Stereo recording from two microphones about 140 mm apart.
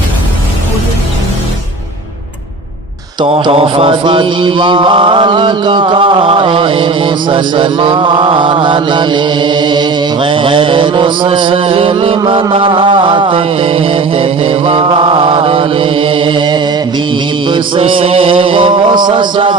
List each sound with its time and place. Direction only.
3.2 s mantra: 45° right (ahead or behind)